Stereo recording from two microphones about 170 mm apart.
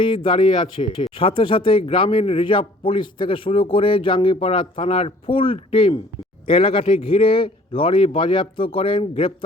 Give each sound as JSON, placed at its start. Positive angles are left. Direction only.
{"t": 0.0, "sound": "speech", "side_deg": 30}